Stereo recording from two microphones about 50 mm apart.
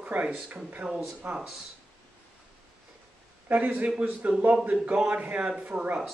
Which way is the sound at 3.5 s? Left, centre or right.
Right.